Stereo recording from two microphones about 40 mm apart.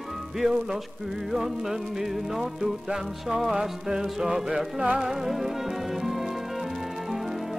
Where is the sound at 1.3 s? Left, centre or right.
Centre.